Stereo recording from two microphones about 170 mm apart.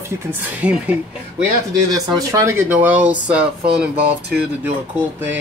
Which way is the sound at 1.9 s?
20° right (ahead or behind).